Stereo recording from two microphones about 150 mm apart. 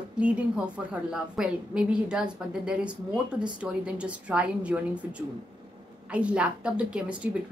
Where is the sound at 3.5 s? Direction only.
5° right (ahead or behind).